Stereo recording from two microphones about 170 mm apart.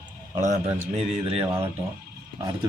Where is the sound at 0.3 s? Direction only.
45° right (ahead or behind).